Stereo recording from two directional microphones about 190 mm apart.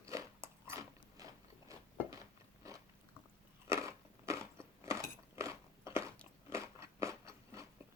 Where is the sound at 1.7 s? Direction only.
15° right (ahead or behind).